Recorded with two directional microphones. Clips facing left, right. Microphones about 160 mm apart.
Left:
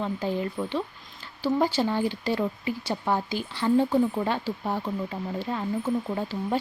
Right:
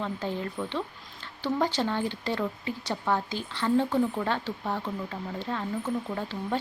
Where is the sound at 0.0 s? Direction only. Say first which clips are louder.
Left 4 dB; 10° left (ahead or behind).